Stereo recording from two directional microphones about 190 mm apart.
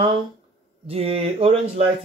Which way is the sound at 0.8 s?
30° right (ahead or behind).